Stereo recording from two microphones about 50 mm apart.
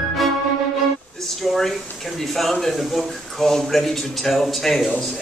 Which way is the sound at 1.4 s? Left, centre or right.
Centre.